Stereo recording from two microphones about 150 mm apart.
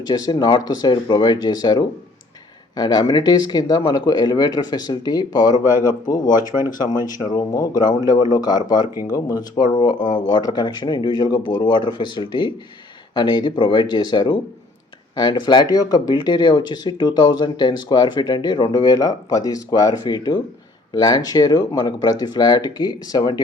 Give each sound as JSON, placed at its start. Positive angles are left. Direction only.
{"t": 0.1, "sound": "speech", "side_deg": 30}
{"t": 6.1, "sound": "speech", "side_deg": 60}
{"t": 6.7, "sound": "speech", "side_deg": 25}